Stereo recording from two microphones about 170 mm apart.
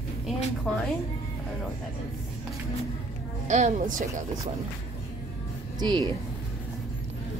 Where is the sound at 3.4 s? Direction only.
45° right (ahead or behind).